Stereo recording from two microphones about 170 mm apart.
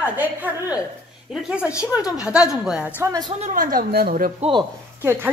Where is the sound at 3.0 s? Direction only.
20° right (ahead or behind).